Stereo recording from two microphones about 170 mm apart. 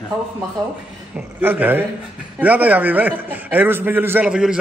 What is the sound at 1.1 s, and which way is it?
A man's voice, 10° right (ahead or behind).